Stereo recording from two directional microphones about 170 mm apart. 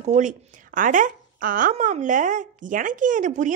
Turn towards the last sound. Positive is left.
turn(degrees=-50)  # may be behind; listen again after turning